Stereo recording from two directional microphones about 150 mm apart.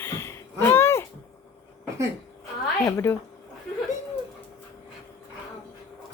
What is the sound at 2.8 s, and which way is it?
Speech, 15° left (ahead or behind).